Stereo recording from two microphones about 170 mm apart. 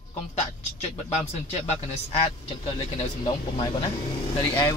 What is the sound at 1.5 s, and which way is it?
A man's voice, 40° left (ahead or behind).